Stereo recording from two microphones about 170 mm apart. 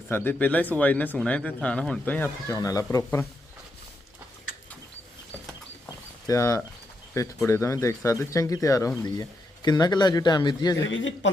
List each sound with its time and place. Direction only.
0.1 s speech: 10° left (ahead or behind)
5.8 s a sound: 20° left (ahead or behind)
7.4 s speech: 15° left (ahead or behind)
10.8 s speech: 90° left